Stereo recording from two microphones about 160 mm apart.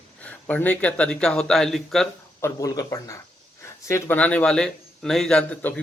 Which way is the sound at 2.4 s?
20° left (ahead or behind).